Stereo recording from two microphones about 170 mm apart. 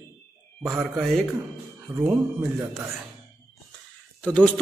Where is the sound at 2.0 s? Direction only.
10° right (ahead or behind).